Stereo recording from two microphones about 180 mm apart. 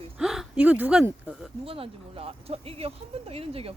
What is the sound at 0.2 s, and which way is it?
Speech, centre (ahead or behind).